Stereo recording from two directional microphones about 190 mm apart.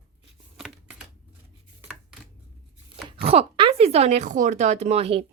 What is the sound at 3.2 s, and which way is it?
Speech, 30° right (ahead or behind).